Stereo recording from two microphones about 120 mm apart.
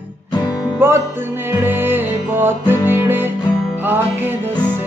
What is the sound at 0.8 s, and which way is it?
Music, 15° right (ahead or behind).